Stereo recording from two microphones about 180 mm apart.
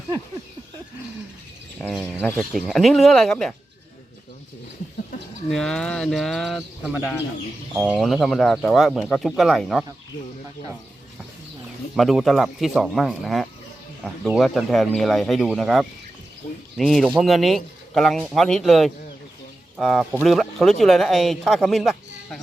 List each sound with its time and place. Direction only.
1.9 s speech: 5° right (ahead or behind)
5.5 s speech: 5° left (ahead or behind)
11.9 s speech: centre (ahead or behind)